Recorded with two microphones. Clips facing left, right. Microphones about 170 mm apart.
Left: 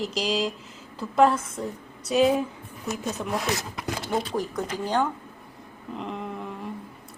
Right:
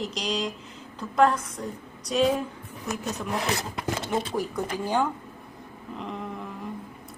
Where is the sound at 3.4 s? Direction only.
30° right (ahead or behind).